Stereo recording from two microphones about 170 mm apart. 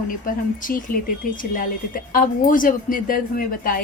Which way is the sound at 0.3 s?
55° left (ahead or behind).